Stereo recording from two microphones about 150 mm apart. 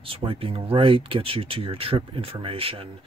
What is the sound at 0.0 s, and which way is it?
Speech, 35° right (ahead or behind).